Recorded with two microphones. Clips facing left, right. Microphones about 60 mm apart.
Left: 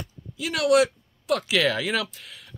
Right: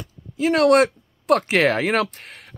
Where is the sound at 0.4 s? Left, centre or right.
Right.